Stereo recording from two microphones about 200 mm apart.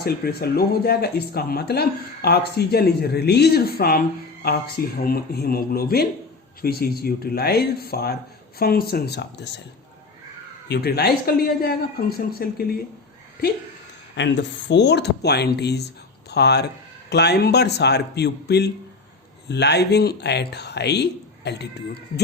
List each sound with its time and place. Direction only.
0.0 s speech: 50° left (ahead or behind)
10.7 s speech: 55° left (ahead or behind)
14.2 s speech: 65° left (ahead or behind)